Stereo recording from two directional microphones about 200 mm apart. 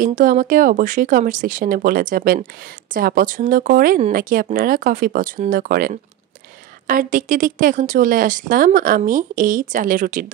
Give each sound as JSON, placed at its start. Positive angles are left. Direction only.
{"t": 0.0, "sound": "speech", "side_deg": -40}